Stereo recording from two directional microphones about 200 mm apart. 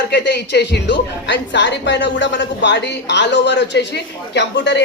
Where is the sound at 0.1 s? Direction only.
60° left (ahead or behind).